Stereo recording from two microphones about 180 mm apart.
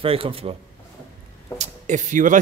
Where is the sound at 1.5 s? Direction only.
40° right (ahead or behind).